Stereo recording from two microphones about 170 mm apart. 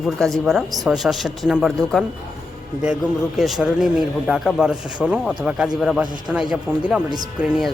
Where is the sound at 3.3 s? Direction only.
Centre (ahead or behind).